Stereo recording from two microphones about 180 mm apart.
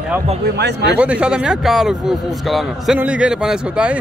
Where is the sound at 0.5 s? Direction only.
70° right (ahead or behind).